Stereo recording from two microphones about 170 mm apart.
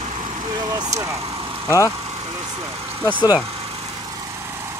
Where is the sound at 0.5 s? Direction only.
25° right (ahead or behind).